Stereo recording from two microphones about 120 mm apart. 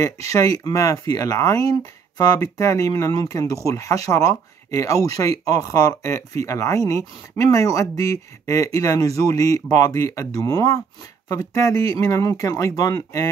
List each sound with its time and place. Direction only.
0.0 s speech: 25° left (ahead or behind)